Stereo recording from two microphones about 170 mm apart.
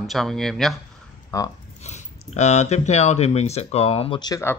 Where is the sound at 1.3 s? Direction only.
20° left (ahead or behind).